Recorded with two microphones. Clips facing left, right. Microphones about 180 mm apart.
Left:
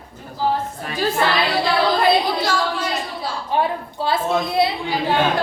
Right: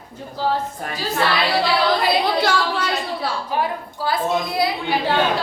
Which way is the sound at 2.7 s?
65° right (ahead or behind).